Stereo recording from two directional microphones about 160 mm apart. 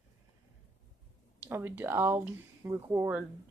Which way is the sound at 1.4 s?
15° right (ahead or behind).